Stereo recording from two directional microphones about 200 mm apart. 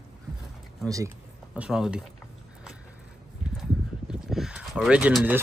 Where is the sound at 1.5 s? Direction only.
5° right (ahead or behind).